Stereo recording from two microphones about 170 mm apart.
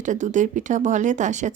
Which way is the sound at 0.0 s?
45° right (ahead or behind).